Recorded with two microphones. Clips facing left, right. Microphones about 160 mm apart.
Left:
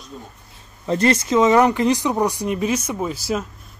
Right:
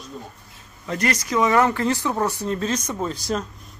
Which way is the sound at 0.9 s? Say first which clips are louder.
Left 6 dB; 30° left (ahead or behind).